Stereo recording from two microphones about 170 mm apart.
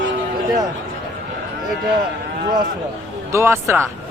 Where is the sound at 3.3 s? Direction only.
15° right (ahead or behind).